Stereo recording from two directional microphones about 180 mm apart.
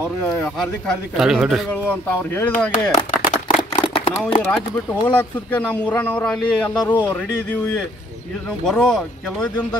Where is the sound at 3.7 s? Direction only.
30° left (ahead or behind).